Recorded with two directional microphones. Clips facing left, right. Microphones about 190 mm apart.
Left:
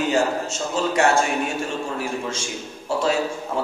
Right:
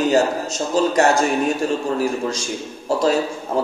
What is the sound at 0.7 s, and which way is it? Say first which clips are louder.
A man's voice: right 3 dB; 40° right (ahead or behind).